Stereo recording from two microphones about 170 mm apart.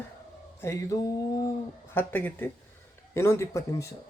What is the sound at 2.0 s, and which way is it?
Speech, 10° left (ahead or behind).